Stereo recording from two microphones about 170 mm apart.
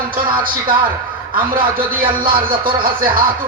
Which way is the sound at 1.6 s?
55° right (ahead or behind).